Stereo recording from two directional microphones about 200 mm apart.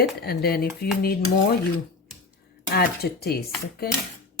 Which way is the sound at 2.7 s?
50° left (ahead or behind).